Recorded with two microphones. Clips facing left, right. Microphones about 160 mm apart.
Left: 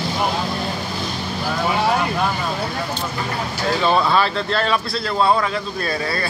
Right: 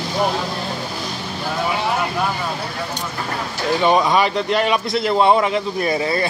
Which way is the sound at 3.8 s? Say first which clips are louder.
Right 2 dB; 15° right (ahead or behind).